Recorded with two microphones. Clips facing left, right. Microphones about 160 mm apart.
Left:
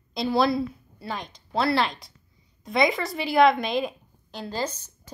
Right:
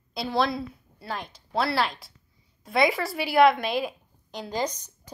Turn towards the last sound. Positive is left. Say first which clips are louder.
# right 1 dB
turn(degrees=-15)  # may be behind; listen again after turning